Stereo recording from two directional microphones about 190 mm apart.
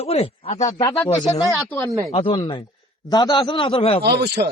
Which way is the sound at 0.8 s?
15° left (ahead or behind).